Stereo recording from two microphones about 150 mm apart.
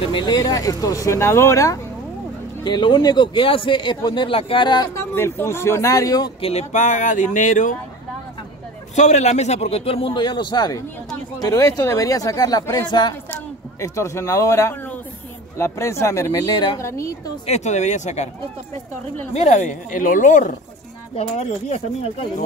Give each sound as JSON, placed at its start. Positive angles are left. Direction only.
{"t": 0.1, "sound": "speech", "side_deg": 25}
{"t": 2.6, "sound": "speech", "side_deg": 30}
{"t": 4.9, "sound": "a man's voice", "side_deg": 15}
{"t": 6.4, "sound": "speech", "side_deg": 50}
{"t": 8.9, "sound": "speech", "side_deg": 50}
{"t": 17.5, "sound": "speech", "side_deg": 50}
{"t": 19.3, "sound": "speech", "side_deg": 50}
{"t": 21.2, "sound": "speech", "side_deg": 45}